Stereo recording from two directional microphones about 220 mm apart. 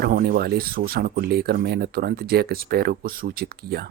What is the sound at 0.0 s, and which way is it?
Speech, 45° right (ahead or behind).